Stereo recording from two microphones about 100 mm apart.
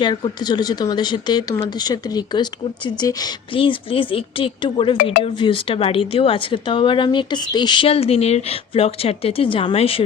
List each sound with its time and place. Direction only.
0.3 s speech: 45° left (ahead or behind)
3.5 s speech: 60° left (ahead or behind)
7.9 s speech: 80° left